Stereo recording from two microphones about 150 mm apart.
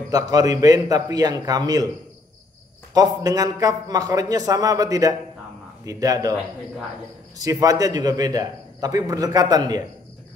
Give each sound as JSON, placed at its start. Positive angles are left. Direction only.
{"t": 0.1, "sound": "a man's voice", "side_deg": -25}
{"t": 2.9, "sound": "a man's voice", "side_deg": -25}
{"t": 7.3, "sound": "a man's voice", "side_deg": -25}